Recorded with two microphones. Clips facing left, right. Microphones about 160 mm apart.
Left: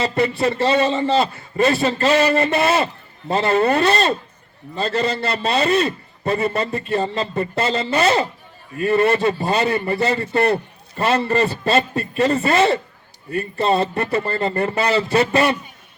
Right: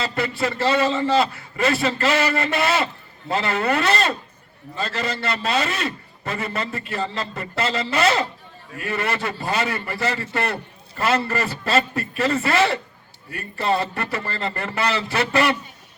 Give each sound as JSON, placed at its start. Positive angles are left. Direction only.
{"t": 0.0, "sound": "a man's voice", "side_deg": 25}